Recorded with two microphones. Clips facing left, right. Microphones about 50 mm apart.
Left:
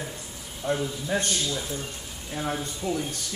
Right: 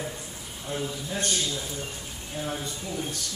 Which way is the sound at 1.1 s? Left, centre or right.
Left.